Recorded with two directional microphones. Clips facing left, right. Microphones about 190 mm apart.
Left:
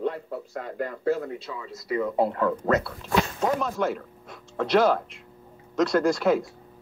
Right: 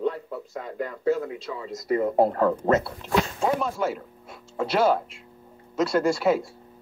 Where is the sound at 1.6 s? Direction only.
45° right (ahead or behind); by 2.9 s 25° right (ahead or behind).